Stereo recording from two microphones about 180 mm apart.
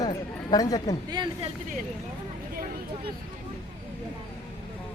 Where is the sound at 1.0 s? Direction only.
25° right (ahead or behind).